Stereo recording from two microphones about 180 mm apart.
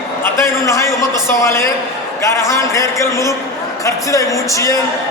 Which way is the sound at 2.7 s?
15° left (ahead or behind).